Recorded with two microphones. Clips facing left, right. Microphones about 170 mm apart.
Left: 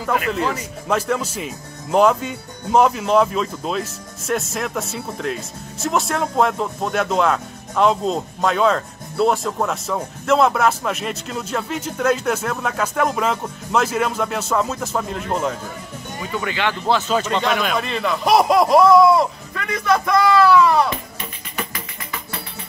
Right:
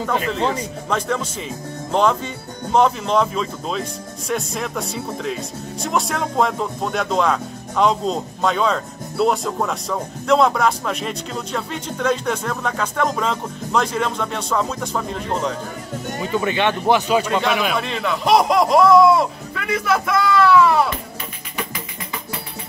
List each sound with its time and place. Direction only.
0.4 s speech: 30° right (ahead or behind)
0.8 s speech: 5° left (ahead or behind)
16.2 s speech: 20° right (ahead or behind); by 20.9 s centre (ahead or behind)